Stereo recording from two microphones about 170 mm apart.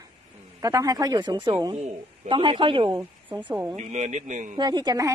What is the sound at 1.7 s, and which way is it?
Speech, 40° right (ahead or behind).